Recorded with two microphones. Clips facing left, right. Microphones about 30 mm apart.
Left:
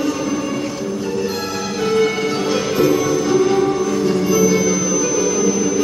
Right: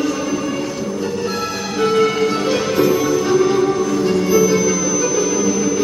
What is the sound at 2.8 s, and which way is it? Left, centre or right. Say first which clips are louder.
Music: even; centre.